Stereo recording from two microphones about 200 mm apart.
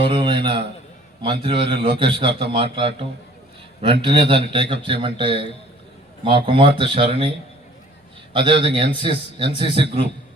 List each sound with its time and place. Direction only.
0.0 s a man's voice: 25° right (ahead or behind)